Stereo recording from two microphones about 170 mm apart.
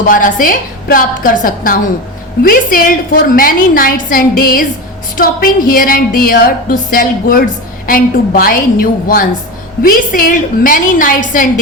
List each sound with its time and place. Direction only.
0.1 s a woman's voice: 55° left (ahead or behind)